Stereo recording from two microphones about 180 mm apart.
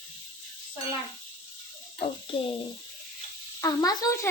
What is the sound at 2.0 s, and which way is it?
Speech, 35° left (ahead or behind).